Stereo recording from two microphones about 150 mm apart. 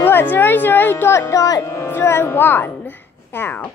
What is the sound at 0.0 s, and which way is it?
Speech, 15° left (ahead or behind).